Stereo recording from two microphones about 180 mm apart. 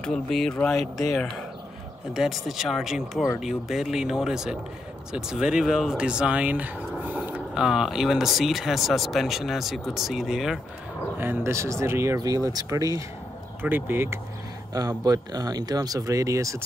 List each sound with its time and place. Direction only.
0.0 s speech: centre (ahead or behind)
2.1 s speech: centre (ahead or behind); by 16.6 s 15° right (ahead or behind)